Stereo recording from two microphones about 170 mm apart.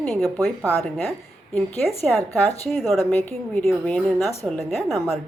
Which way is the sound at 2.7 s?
Centre (ahead or behind).